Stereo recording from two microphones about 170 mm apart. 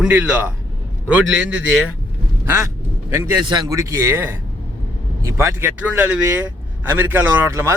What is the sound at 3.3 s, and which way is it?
A man's voice, 25° right (ahead or behind).